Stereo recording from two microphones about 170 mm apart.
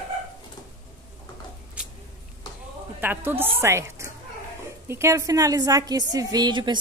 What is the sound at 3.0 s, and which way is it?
A woman's voice, 10° right (ahead or behind).